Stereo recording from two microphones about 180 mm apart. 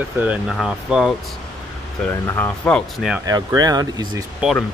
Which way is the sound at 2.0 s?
10° left (ahead or behind).